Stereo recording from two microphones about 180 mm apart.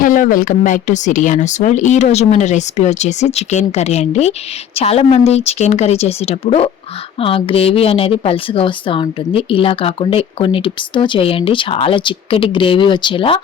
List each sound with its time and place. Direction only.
0.0 s speech: 50° left (ahead or behind); by 13.4 s 30° left (ahead or behind)